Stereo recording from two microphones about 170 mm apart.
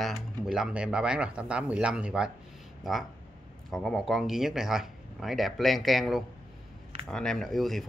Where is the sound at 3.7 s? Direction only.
Centre (ahead or behind).